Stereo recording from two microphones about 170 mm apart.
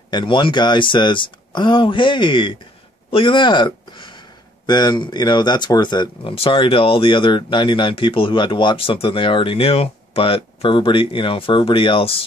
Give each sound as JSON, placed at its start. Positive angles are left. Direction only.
{"t": 0.1, "sound": "speech", "side_deg": 30}